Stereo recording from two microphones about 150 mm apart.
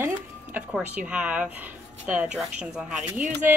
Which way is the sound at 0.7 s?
10° right (ahead or behind).